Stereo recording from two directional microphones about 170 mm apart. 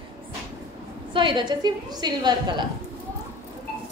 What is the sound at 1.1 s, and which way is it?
A woman's voice, 25° right (ahead or behind).